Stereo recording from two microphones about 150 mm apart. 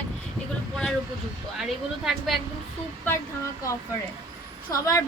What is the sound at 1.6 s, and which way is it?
Speech, centre (ahead or behind).